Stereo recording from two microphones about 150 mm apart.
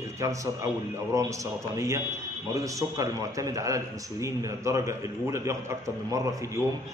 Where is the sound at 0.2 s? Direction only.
20° right (ahead or behind).